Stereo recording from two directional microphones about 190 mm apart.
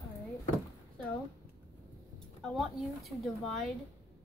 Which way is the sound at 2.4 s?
Centre (ahead or behind).